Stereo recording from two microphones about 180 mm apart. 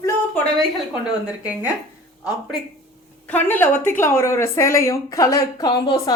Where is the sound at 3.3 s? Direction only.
10° left (ahead or behind).